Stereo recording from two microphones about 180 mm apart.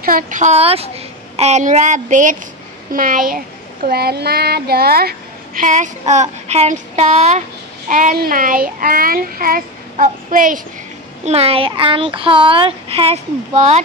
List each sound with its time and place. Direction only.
0.0 s a child's voice: 50° right (ahead or behind)
3.8 s a child's voice: 60° right (ahead or behind); by 7.4 s 40° right (ahead or behind)
7.9 s a child's voice: 50° right (ahead or behind)
11.2 s speech: 35° right (ahead or behind)